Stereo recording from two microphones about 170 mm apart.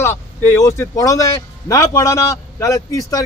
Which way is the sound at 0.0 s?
15° left (ahead or behind).